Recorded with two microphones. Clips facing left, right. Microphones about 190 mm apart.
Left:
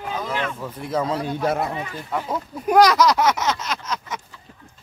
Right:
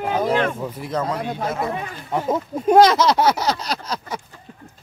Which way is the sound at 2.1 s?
25° right (ahead or behind).